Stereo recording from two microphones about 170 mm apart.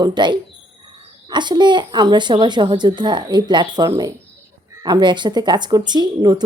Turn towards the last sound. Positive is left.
turn(degrees=-25)  # may be behind; listen again after turning